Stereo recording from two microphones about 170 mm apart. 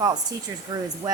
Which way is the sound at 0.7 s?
20° right (ahead or behind).